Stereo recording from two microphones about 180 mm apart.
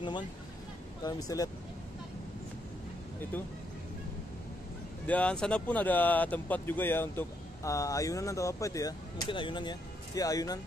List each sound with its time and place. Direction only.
1.0 s speech: 20° left (ahead or behind)
5.0 s speech: 5° left (ahead or behind)